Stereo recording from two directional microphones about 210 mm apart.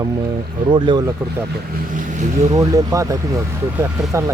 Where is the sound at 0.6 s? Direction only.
20° right (ahead or behind).